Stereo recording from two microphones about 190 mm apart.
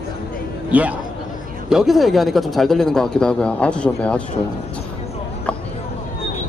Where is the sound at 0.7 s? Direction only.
10° right (ahead or behind).